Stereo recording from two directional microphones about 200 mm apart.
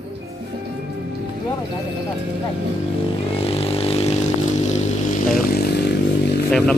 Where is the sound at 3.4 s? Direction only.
30° left (ahead or behind).